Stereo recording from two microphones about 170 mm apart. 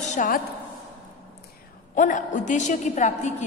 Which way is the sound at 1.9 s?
50° left (ahead or behind).